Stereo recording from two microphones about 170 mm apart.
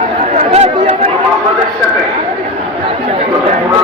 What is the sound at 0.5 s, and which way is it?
Chatter, 40° right (ahead or behind).